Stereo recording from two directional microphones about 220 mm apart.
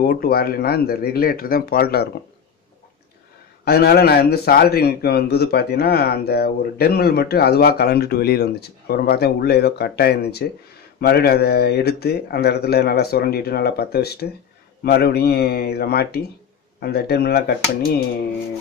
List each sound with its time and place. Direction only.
0.0 s a man's voice: 40° left (ahead or behind)
3.6 s a man's voice: 45° left (ahead or behind)